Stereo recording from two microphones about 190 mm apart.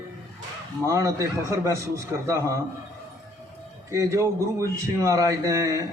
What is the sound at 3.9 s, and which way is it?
A man's voice, 15° right (ahead or behind).